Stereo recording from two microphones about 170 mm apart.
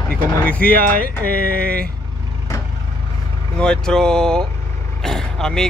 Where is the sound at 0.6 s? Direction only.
55° right (ahead or behind).